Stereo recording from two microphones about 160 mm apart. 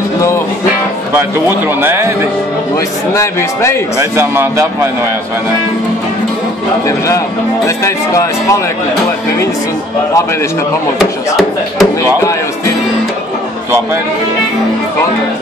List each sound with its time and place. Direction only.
1.8 s a man's voice: 15° right (ahead or behind)
3.2 s speech: 20° left (ahead or behind)
4.0 s a man's voice: 15° right (ahead or behind)
7.6 s speech: 20° left (ahead or behind)
11.0 s speech: 5° right (ahead or behind)